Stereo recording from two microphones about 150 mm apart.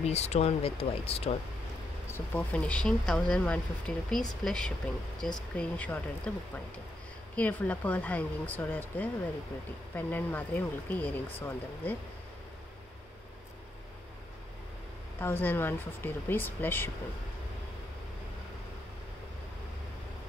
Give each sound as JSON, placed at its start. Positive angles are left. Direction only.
{"t": 0.0, "sound": "speech", "side_deg": 45}
{"t": 2.0, "sound": "speech", "side_deg": 15}
{"t": 15.1, "sound": "speech", "side_deg": 15}